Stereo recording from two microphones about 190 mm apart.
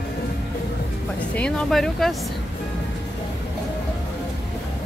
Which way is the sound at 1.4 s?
5° left (ahead or behind).